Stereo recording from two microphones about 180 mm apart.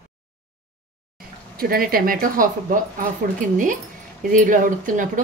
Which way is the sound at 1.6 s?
55° right (ahead or behind).